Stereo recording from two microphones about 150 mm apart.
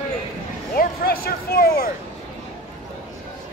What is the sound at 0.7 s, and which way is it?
Speech, 90° left.